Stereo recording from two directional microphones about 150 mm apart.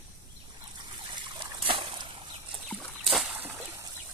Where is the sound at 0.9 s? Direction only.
30° right (ahead or behind).